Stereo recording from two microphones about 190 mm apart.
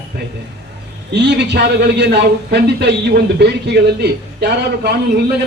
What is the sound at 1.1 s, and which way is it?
A man's voice, 65° right (ahead or behind).